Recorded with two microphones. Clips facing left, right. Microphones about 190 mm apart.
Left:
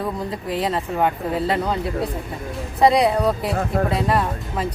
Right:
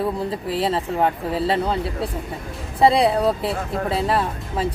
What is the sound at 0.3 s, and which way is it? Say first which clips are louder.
Speech: right 1 dB; 30° right (ahead or behind).